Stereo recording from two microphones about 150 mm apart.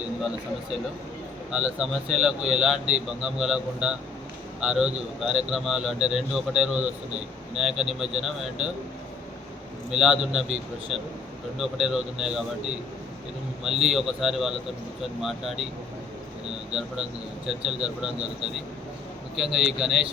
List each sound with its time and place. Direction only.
1.5 s speech: 5° right (ahead or behind)
9.9 s speech: 5° right (ahead or behind)
16.7 s speech: 5° right (ahead or behind)
19.4 s speech: centre (ahead or behind)